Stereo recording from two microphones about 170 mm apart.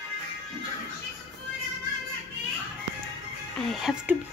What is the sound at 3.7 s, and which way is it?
Speech, 5° right (ahead or behind).